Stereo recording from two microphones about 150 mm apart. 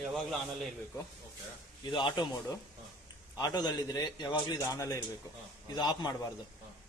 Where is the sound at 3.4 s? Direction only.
25° left (ahead or behind).